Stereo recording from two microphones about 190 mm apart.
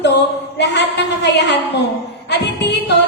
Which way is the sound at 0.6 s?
65° left (ahead or behind).